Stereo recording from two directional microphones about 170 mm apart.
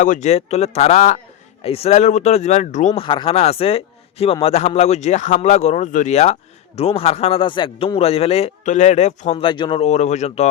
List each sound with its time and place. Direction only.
0.0 s a man's voice: 45° left (ahead or behind)
3.0 s a man's voice: 30° left (ahead or behind)
9.5 s a man's voice: 30° left (ahead or behind)